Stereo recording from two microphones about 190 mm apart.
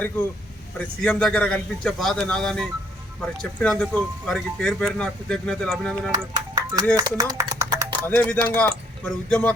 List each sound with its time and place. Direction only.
1.0 s speech: 5° left (ahead or behind)
6.1 s speech: 20° right (ahead or behind)
8.0 s speech: 10° left (ahead or behind)